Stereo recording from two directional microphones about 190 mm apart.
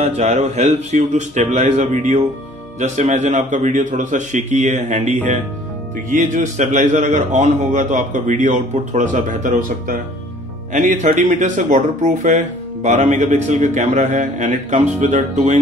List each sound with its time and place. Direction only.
0.0 s speech: 35° right (ahead or behind)